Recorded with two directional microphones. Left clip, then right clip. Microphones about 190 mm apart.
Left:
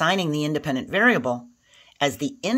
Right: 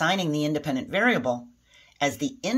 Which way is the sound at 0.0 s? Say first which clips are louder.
Left 2 dB; 55° left (ahead or behind).